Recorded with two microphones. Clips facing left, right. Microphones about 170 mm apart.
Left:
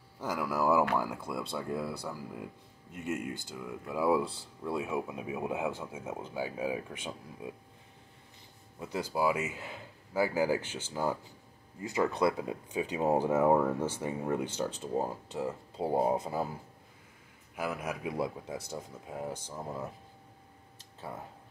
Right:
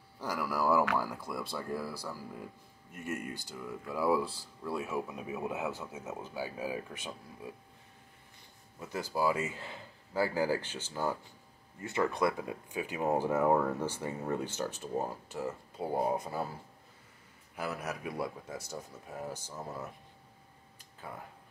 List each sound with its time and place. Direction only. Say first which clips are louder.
0.2 s a sound: left 2 dB; 20° left (ahead or behind)
0.8 s speech: left 2 dB; 20° left (ahead or behind)
8.7 s speech: left 2 dB; 15° left (ahead or behind)
17.6 s speech: left 2 dB; 10° left (ahead or behind)